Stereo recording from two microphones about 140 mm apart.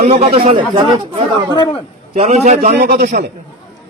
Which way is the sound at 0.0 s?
50° right (ahead or behind).